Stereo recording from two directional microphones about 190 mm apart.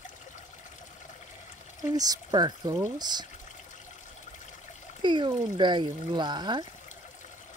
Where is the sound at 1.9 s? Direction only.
20° right (ahead or behind).